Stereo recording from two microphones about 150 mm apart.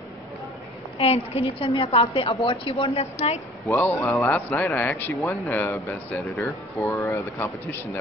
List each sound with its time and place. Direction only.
0.9 s a woman's voice: 40° left (ahead or behind)
3.6 s speech: 15° left (ahead or behind)